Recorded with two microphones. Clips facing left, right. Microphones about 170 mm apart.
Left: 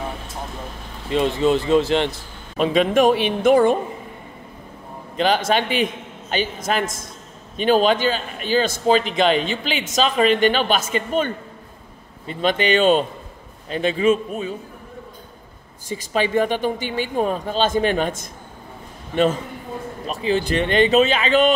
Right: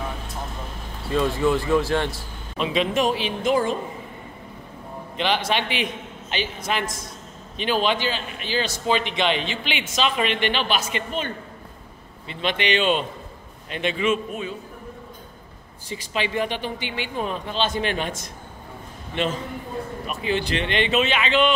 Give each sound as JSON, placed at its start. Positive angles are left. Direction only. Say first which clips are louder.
{"t": 1.1, "sound": "speech", "louder": "left 3 dB", "side_deg": 20}
{"t": 2.5, "sound": "a man's voice", "louder": "left 6 dB", "side_deg": 50}
{"t": 5.1, "sound": "a man's voice", "louder": "left 5 dB", "side_deg": 40}
{"t": 12.3, "sound": "a man's voice", "louder": "left 5 dB", "side_deg": 45}
{"t": 15.9, "sound": "a man's voice", "louder": "left 6 dB", "side_deg": 45}
{"t": 20.1, "sound": "speech", "louder": "left 5 dB", "side_deg": 35}